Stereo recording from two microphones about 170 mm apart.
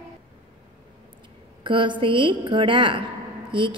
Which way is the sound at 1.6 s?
30° right (ahead or behind).